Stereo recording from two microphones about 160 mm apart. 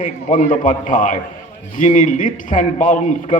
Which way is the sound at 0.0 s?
50° left (ahead or behind).